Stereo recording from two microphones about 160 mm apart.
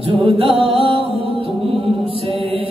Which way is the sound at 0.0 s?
35° right (ahead or behind).